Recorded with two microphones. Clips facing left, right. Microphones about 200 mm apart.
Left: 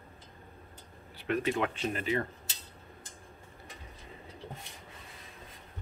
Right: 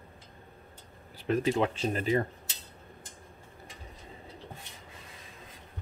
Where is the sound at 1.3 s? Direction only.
30° right (ahead or behind).